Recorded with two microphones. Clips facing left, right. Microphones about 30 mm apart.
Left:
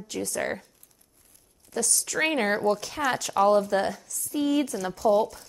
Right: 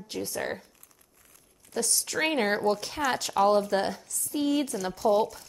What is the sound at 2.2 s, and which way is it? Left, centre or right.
Speech, centre.